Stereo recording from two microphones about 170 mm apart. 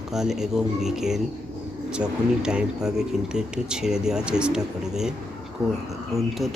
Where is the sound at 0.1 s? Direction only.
Centre (ahead or behind).